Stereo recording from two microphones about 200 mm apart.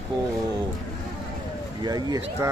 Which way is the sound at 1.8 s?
20° right (ahead or behind).